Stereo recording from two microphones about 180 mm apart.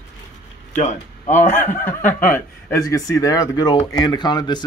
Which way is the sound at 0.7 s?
40° left (ahead or behind).